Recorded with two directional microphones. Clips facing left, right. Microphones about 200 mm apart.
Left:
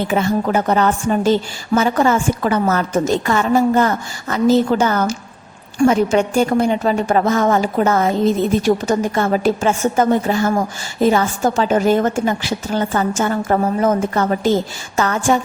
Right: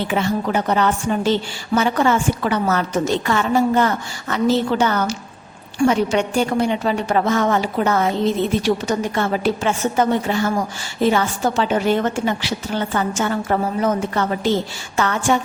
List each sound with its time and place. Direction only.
0.1 s a woman's voice: 45° left (ahead or behind)